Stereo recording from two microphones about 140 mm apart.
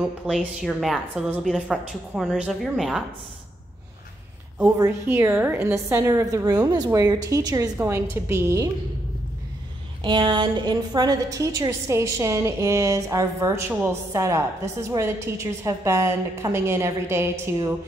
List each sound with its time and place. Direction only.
0.3 s a woman's voice: centre (ahead or behind)
5.0 s a woman's voice: 15° right (ahead or behind)
10.0 s a woman's voice: 35° right (ahead or behind); by 17.3 s 20° right (ahead or behind)